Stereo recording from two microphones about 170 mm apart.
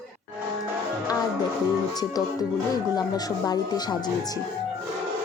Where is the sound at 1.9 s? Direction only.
20° left (ahead or behind).